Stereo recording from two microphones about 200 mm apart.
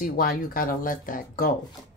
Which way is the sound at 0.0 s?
45° left (ahead or behind).